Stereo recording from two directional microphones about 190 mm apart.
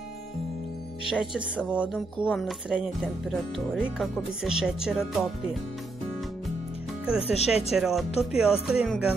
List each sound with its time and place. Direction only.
1.0 s speech: 5° right (ahead or behind)
7.2 s speech: 35° left (ahead or behind)
7.7 s speech: centre (ahead or behind)